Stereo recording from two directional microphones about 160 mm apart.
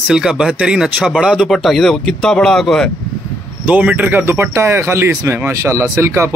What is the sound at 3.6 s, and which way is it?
Speech, 10° right (ahead or behind).